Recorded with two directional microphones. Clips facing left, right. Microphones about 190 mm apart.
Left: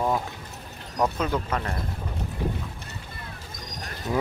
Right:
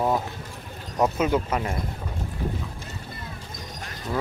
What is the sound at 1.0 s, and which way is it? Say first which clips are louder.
Speech: right 3 dB; 10° right (ahead or behind).